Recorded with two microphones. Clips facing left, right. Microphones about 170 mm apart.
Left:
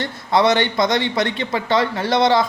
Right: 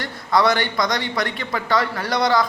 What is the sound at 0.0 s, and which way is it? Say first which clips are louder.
A man's voice: left 2 dB; 25° left (ahead or behind).